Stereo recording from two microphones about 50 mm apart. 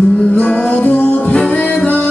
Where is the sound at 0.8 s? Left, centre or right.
Left.